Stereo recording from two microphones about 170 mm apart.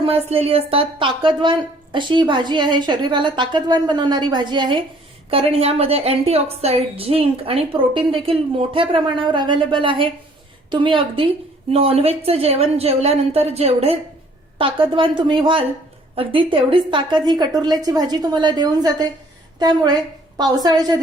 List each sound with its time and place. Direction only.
0.0 s a woman's voice: 35° right (ahead or behind)